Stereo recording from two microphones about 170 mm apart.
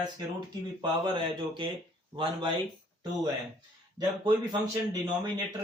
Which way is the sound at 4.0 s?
25° right (ahead or behind).